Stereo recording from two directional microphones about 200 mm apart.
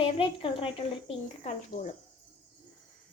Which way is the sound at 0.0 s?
25° left (ahead or behind).